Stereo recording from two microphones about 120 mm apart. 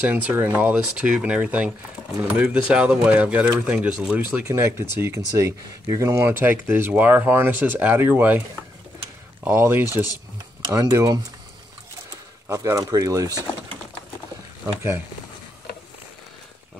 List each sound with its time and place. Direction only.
0.0 s speech: 10° right (ahead or behind)
4.5 s speech: 25° right (ahead or behind)
9.4 s speech: 20° right (ahead or behind)
10.6 s speech: 30° right (ahead or behind)
12.4 s speech: 25° right (ahead or behind)